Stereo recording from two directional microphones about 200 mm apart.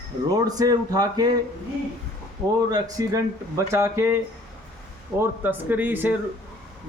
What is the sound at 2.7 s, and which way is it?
Speech, 15° right (ahead or behind).